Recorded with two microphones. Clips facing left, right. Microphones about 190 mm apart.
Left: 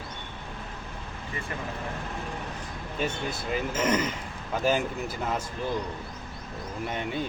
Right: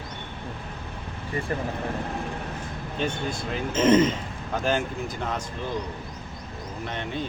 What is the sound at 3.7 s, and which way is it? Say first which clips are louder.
Speech: right 10 dB; 25° right (ahead or behind).